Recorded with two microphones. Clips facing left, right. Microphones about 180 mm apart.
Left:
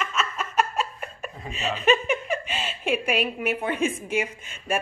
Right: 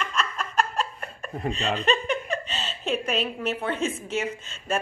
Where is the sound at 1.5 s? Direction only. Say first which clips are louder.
Left 4 dB; 5° left (ahead or behind).